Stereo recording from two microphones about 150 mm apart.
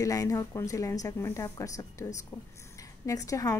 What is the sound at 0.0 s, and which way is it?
A woman's voice, 25° left (ahead or behind).